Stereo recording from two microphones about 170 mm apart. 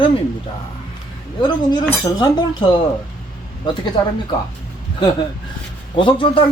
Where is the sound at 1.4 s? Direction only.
25° left (ahead or behind).